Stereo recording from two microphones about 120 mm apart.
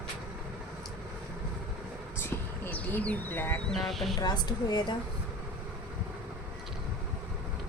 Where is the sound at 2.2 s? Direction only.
15° left (ahead or behind).